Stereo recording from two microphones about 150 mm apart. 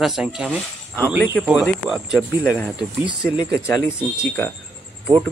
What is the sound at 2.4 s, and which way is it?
Speech, 15° left (ahead or behind).